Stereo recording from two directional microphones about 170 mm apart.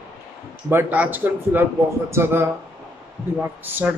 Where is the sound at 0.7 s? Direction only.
10° right (ahead or behind).